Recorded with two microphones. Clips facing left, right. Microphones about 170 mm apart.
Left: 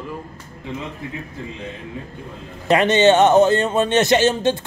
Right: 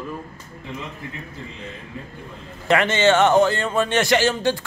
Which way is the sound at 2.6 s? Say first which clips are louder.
Left 4 dB; 20° left (ahead or behind).